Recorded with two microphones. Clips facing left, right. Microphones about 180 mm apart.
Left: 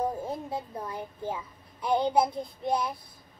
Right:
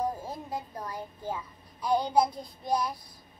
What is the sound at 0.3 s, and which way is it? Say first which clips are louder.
A child's voice: left 3 dB; 20° left (ahead or behind).